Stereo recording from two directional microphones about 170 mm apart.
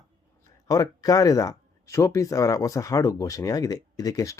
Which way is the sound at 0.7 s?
20° left (ahead or behind).